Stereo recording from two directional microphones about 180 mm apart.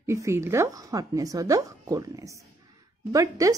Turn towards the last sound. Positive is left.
turn(degrees=-20)  # may be behind; listen again after turning